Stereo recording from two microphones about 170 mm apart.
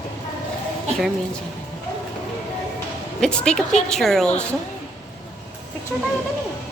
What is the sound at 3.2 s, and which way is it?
Speech, 5° left (ahead or behind).